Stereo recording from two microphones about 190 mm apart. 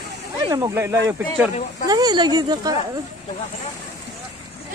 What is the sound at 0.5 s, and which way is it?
Speech, 15° right (ahead or behind).